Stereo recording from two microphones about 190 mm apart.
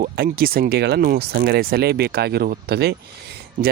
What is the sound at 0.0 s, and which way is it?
Speech, 50° right (ahead or behind).